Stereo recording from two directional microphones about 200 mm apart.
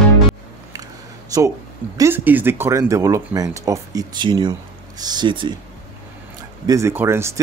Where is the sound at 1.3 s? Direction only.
15° right (ahead or behind).